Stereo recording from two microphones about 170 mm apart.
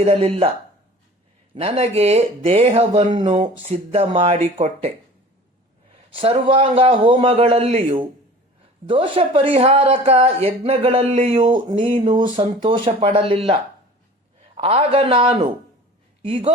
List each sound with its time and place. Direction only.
0.0 s a woman's voice: 35° right (ahead or behind)
1.5 s a woman's voice: 35° right (ahead or behind)
3.1 s speech: 25° right (ahead or behind)
3.3 s a woman's voice: 40° right (ahead or behind)
6.1 s a woman's voice: 35° right (ahead or behind)
11.8 s speech: 40° right (ahead or behind)
12.2 s a woman's voice: 30° right (ahead or behind)